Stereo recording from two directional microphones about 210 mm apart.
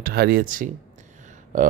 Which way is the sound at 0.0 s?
45° right (ahead or behind).